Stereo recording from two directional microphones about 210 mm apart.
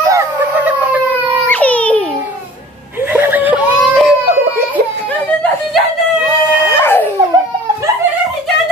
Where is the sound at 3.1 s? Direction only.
10° right (ahead or behind).